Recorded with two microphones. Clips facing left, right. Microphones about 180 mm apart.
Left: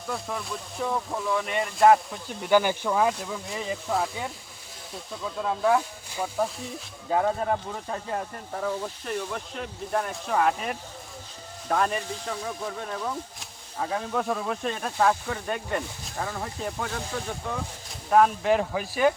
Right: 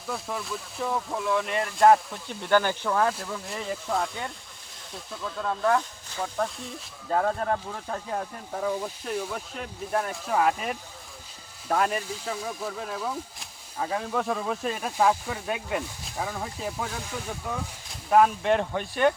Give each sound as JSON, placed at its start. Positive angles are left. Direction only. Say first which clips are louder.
{"t": 0.1, "sound": "speech", "louder": "even", "side_deg": 0}
{"t": 2.5, "sound": "speech", "louder": "left 1 dB", "side_deg": 10}
{"t": 18.1, "sound": "speech", "louder": "even", "side_deg": 0}